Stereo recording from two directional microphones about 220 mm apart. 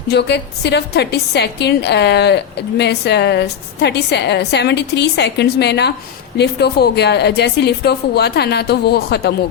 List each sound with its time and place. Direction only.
0.1 s a woman's voice: 50° left (ahead or behind)